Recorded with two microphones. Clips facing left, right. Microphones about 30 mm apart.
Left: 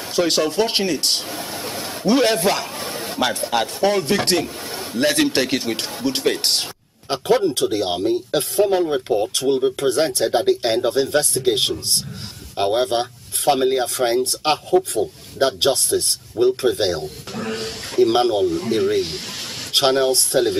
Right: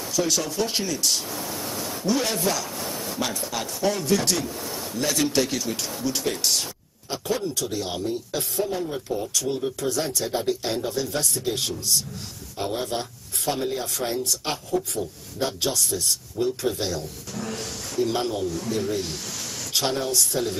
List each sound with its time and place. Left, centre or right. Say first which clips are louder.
0.1 s speech: left 7 dB; left